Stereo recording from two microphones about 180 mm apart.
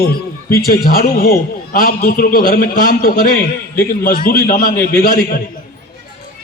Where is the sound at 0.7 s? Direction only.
55° left (ahead or behind).